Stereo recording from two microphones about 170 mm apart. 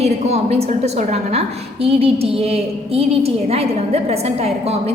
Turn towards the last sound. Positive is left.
turn(degrees=-35)  # may be behind; listen again after turning